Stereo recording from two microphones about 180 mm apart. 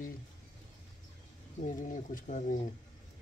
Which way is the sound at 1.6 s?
45° left (ahead or behind).